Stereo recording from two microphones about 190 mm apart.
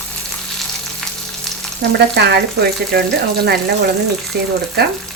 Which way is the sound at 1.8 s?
60° right (ahead or behind).